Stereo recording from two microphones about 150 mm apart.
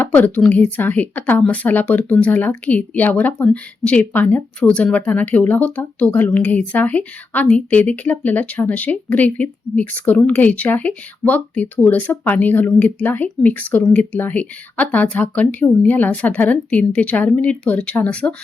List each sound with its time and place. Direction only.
0.0 s speech: 10° left (ahead or behind)